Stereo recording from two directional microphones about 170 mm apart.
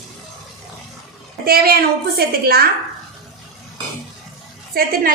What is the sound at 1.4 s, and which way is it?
A woman's voice, 60° right (ahead or behind).